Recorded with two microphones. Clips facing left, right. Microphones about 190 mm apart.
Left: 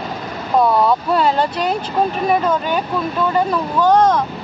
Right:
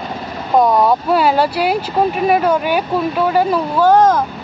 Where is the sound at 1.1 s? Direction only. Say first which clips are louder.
Right 3 dB; 5° right (ahead or behind).